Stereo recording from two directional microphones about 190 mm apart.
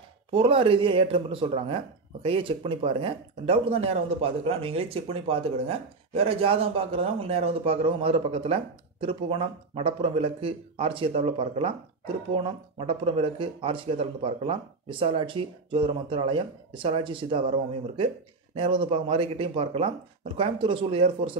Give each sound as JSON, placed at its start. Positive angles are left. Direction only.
{"t": 0.3, "sound": "speech", "side_deg": -30}